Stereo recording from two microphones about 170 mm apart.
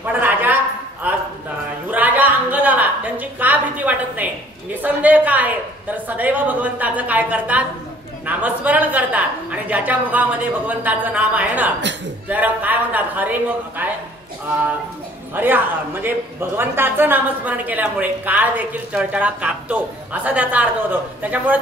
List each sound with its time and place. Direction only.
0.0 s a sound: 10° right (ahead or behind)
8.3 s a woman's voice: 10° right (ahead or behind)
15.3 s a man's voice: 10° right (ahead or behind)